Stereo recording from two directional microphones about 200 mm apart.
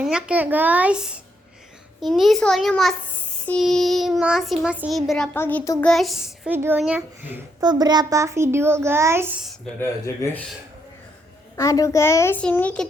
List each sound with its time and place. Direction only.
0.0 s a child's voice: 5° right (ahead or behind); by 5.9 s 10° left (ahead or behind)
5.9 s a child's voice: centre (ahead or behind)
7.6 s a child's voice: 20° right (ahead or behind)
11.5 s a child's voice: 15° left (ahead or behind)